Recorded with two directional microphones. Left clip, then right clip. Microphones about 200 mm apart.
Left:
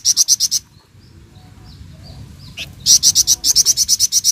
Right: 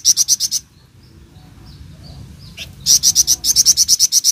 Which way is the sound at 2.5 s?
40° left (ahead or behind).